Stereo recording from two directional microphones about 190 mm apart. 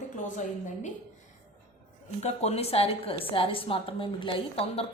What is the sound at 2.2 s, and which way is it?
A woman's voice, 35° left (ahead or behind).